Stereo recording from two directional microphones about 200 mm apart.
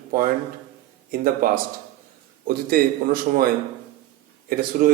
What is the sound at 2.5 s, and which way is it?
Speech, 45° right (ahead or behind).